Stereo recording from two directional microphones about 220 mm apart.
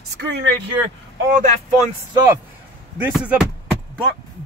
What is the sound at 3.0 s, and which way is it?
Speech, 5° right (ahead or behind).